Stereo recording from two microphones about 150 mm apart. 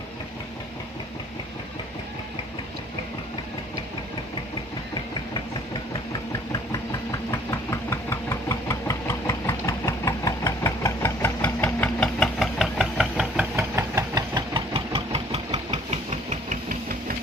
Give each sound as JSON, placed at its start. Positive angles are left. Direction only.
{"t": 6.5, "sound": "engine", "side_deg": 25}
{"t": 13.6, "sound": "engine", "side_deg": -20}